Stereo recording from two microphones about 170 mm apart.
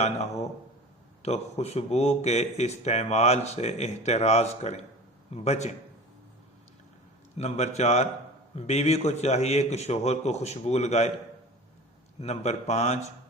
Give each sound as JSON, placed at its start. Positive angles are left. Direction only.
{"t": 1.2, "sound": "speech", "side_deg": 40}
{"t": 7.3, "sound": "speech", "side_deg": 40}
{"t": 12.2, "sound": "speech", "side_deg": 40}